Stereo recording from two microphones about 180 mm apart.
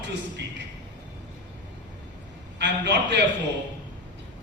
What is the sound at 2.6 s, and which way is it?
Speech, 70° right (ahead or behind).